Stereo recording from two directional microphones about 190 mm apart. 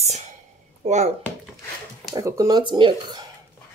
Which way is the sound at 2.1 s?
20° right (ahead or behind).